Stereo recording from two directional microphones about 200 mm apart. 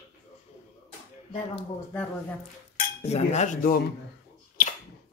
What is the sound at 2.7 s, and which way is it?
Cutlery, 35° left (ahead or behind).